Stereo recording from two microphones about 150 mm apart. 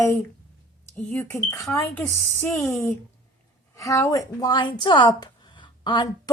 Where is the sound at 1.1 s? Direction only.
10° left (ahead or behind).